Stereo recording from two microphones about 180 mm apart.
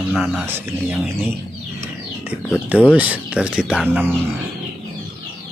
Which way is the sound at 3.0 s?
5° right (ahead or behind).